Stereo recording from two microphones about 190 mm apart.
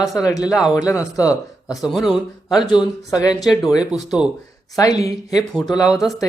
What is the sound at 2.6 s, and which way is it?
Speech, 20° left (ahead or behind).